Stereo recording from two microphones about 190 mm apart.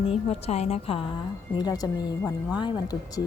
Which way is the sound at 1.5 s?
20° left (ahead or behind).